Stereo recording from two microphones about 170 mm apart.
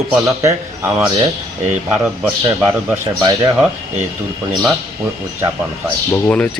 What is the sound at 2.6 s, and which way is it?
Speech, 10° right (ahead or behind).